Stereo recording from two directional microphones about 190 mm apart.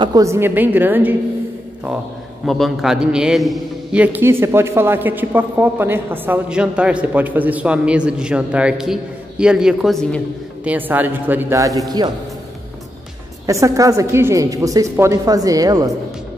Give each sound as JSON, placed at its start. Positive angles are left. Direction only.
{"t": 0.0, "sound": "a man's voice", "side_deg": -20}
{"t": 2.4, "sound": "a man's voice", "side_deg": 0}
{"t": 10.7, "sound": "a man's voice", "side_deg": -10}
{"t": 13.5, "sound": "a man's voice", "side_deg": -15}